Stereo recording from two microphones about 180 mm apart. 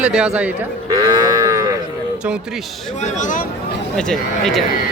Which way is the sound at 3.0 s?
45° left (ahead or behind).